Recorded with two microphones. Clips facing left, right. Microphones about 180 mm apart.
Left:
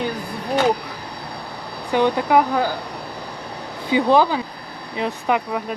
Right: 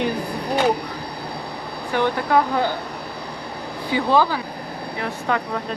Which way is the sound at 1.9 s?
15° left (ahead or behind).